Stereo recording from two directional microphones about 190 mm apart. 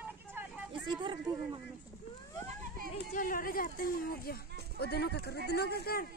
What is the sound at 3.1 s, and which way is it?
Speech, 45° left (ahead or behind).